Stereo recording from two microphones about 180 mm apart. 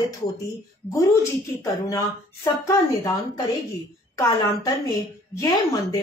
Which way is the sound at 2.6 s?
20° left (ahead or behind).